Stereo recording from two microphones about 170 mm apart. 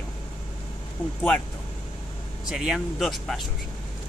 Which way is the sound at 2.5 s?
Centre (ahead or behind).